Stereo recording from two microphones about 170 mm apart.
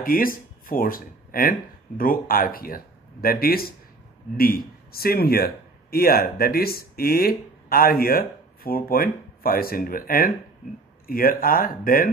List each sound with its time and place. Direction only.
0.0 s a man's voice: 55° left (ahead or behind)